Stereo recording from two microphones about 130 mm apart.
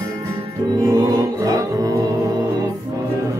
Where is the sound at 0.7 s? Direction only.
25° right (ahead or behind).